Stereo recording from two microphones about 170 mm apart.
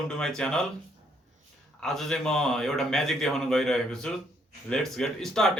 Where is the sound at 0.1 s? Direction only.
5° left (ahead or behind).